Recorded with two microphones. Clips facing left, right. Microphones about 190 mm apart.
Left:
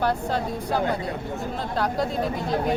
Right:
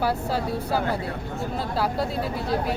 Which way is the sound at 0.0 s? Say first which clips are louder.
Left 1 dB; 5° right (ahead or behind).